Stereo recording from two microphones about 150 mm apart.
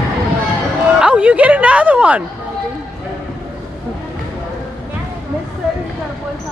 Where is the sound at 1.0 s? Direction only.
10° right (ahead or behind).